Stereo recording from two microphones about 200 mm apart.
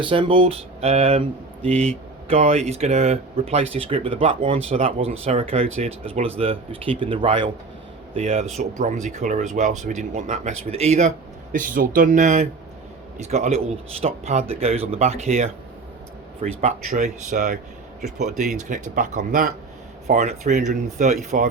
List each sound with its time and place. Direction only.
0.0 s speech: 25° right (ahead or behind)